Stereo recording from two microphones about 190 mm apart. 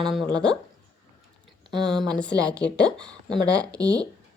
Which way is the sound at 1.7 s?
25° right (ahead or behind).